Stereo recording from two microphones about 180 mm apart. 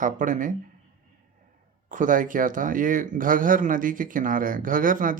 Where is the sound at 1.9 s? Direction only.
45° right (ahead or behind).